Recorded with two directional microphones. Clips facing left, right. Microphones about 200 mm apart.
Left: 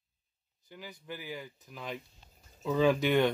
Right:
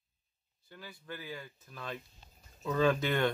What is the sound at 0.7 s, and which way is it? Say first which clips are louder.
Speech: left 2 dB; 15° left (ahead or behind).